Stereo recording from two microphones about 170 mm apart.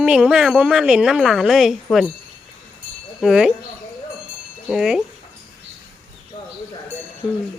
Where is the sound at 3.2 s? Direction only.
5° right (ahead or behind).